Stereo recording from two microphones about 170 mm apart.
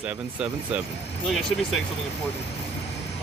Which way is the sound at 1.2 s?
Centre (ahead or behind).